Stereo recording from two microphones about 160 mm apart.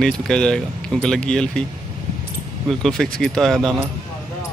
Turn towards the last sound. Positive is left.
turn(degrees=0)  # may be behind; listen again after turning